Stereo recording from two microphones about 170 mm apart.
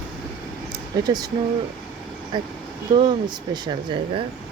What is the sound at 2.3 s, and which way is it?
Speech, 25° right (ahead or behind).